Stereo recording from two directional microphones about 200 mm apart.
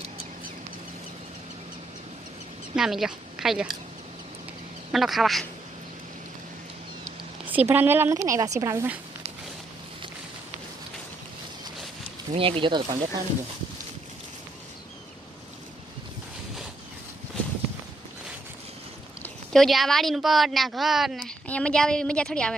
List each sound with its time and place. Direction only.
2.7 s a woman's voice: centre (ahead or behind)
4.9 s speech: centre (ahead or behind)
7.4 s speech: 10° right (ahead or behind)
12.3 s speech: 25° right (ahead or behind)
19.2 s speech: centre (ahead or behind)